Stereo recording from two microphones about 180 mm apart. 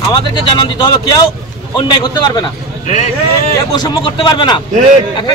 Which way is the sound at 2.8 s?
40° left (ahead or behind).